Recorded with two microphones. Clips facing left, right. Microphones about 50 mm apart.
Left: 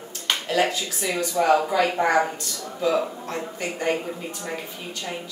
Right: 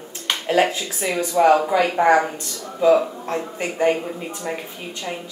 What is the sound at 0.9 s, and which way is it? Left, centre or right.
Speech, centre.